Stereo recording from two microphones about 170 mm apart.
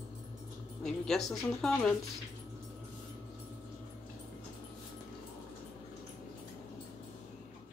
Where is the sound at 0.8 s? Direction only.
Centre (ahead or behind).